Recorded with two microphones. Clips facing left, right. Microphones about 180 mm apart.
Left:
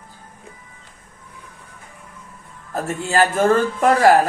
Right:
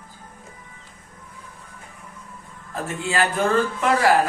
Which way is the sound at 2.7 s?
40° left (ahead or behind).